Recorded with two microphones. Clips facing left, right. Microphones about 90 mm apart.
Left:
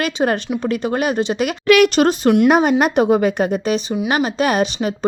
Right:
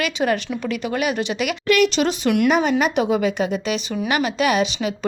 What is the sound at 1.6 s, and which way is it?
A woman's voice, 60° left (ahead or behind).